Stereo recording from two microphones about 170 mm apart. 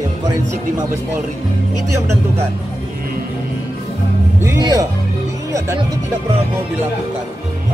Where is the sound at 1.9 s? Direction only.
15° right (ahead or behind).